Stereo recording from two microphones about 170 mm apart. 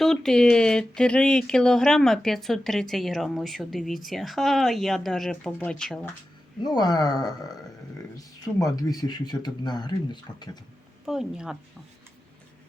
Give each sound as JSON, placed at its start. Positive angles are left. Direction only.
{"t": 0.0, "sound": "speech", "side_deg": 0}
{"t": 6.6, "sound": "speech", "side_deg": 25}
{"t": 11.0, "sound": "speech", "side_deg": 0}